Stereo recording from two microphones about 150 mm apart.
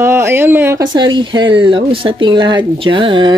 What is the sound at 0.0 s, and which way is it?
Speech, 15° right (ahead or behind).